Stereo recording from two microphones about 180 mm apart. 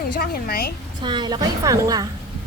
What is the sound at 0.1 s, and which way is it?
Speech, 55° left (ahead or behind).